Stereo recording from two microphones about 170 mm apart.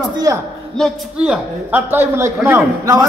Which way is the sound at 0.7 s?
5° right (ahead or behind).